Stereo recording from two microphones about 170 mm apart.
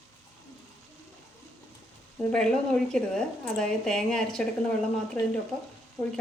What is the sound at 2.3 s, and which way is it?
A woman's voice, 5° left (ahead or behind).